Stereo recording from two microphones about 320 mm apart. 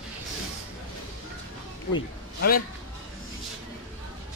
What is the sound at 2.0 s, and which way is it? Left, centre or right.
Speech, left.